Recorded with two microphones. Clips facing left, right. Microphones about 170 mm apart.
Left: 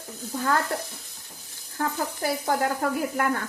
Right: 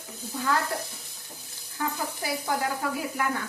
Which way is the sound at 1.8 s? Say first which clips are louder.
Left 4 dB; 50° left (ahead or behind).